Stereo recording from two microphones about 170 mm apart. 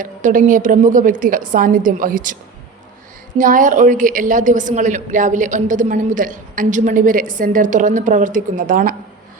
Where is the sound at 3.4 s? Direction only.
50° right (ahead or behind).